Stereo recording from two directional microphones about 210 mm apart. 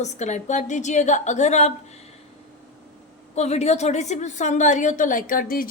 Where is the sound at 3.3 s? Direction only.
30° left (ahead or behind).